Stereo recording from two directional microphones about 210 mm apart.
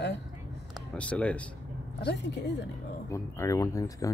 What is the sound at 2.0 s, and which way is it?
Speech, 55° left (ahead or behind).